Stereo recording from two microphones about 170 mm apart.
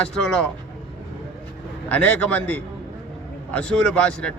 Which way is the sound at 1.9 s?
10° left (ahead or behind).